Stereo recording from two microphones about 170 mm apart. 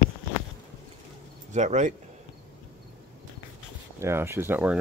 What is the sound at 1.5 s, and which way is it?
Speech, 45° right (ahead or behind).